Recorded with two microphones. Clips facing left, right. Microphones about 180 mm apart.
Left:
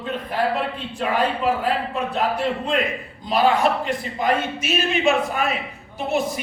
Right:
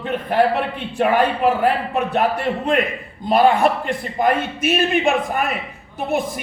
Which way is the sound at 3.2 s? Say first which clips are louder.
Right 4 dB; 55° right (ahead or behind).